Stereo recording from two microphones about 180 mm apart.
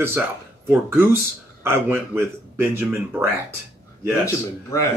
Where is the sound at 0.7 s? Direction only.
10° right (ahead or behind).